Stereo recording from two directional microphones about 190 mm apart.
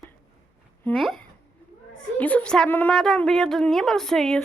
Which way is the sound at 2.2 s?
5° left (ahead or behind).